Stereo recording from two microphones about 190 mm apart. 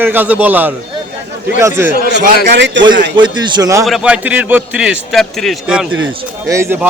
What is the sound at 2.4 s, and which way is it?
Speech, 65° right (ahead or behind).